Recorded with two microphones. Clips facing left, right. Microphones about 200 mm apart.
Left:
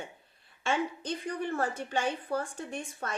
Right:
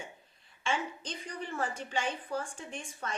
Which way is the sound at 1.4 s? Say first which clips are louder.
Left 4 dB; 55° left (ahead or behind).